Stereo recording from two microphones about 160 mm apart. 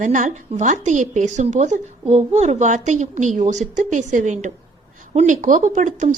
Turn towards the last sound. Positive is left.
turn(degrees=-55)  # may be behind; listen again after turning